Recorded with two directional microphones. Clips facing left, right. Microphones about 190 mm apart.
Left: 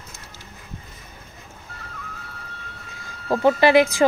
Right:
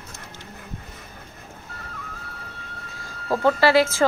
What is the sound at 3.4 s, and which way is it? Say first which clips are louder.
Speech: left 2 dB; 15° left (ahead or behind).